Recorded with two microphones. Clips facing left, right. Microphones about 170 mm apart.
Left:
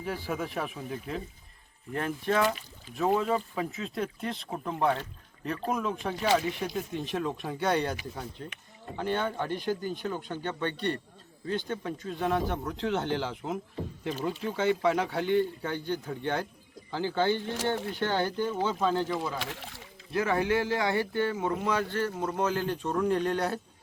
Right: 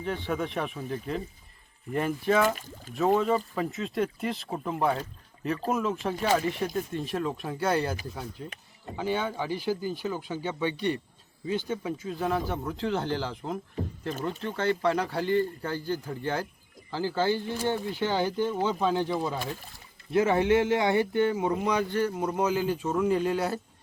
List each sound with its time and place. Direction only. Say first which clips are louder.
0.0 s a man's voice: right 3 dB; 5° left (ahead or behind)
2.6 s speech: right 6 dB; 45° right (ahead or behind)
2.9 s a man's voice: right 3 dB; centre (ahead or behind); by 19.4 s 15° right (ahead or behind)
19.4 s speech: right 3 dB; 90° left
20.1 s speech: right 4 dB; 25° right (ahead or behind); by 23.6 s 5° right (ahead or behind)